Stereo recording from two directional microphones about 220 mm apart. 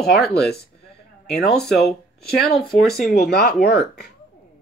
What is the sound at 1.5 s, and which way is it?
Speech, centre (ahead or behind).